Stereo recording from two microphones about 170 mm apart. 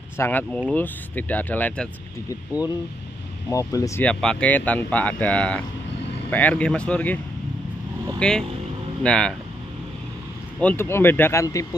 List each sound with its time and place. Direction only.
0.2 s speech: 10° left (ahead or behind)
3.4 s speech: 20° left (ahead or behind)
4.0 s speech: 5° left (ahead or behind)
8.2 s speech: 5° left (ahead or behind)
10.6 s speech: 10° left (ahead or behind)